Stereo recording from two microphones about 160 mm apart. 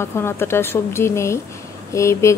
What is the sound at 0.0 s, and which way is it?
A woman's voice, 15° left (ahead or behind).